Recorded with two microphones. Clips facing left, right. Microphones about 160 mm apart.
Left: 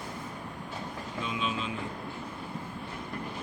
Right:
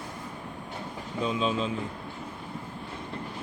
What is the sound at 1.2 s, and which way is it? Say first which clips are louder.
Speech: right 6 dB; 35° right (ahead or behind).